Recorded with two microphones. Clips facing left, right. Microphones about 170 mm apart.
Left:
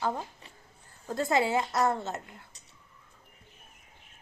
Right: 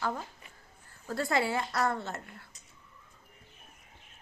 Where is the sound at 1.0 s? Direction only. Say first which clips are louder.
Left 3 dB; 20° left (ahead or behind).